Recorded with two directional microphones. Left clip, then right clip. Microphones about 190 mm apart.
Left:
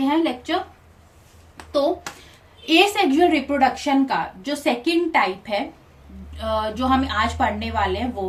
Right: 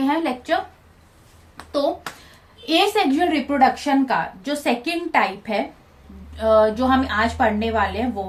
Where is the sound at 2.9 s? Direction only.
30° right (ahead or behind).